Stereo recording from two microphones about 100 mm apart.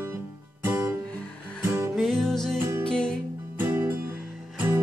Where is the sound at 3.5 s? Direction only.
25° right (ahead or behind).